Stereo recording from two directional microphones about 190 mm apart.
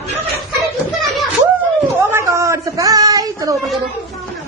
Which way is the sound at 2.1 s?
15° right (ahead or behind).